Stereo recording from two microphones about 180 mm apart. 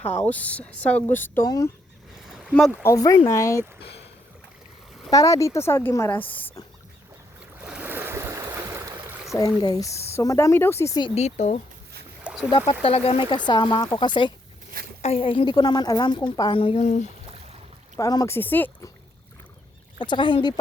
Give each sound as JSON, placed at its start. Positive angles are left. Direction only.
{"t": 0.2, "sound": "a woman's voice", "side_deg": 10}
{"t": 2.2, "sound": "a sound", "side_deg": 0}
{"t": 2.8, "sound": "speech", "side_deg": 20}
{"t": 5.1, "sound": "speech", "side_deg": 20}
{"t": 7.6, "sound": "stream", "side_deg": -10}
{"t": 9.3, "sound": "speech", "side_deg": 20}
{"t": 11.1, "sound": "speech", "side_deg": 40}
{"t": 12.2, "sound": "a sound", "side_deg": -5}
{"t": 12.5, "sound": "a woman's voice", "side_deg": 30}
{"t": 17.9, "sound": "speech", "side_deg": 20}
{"t": 20.0, "sound": "a woman's voice", "side_deg": 25}